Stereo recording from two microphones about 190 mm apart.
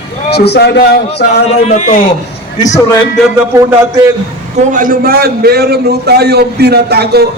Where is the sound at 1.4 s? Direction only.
35° left (ahead or behind).